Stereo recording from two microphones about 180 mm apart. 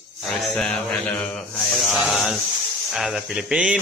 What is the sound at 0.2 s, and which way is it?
Speech, 5° left (ahead or behind).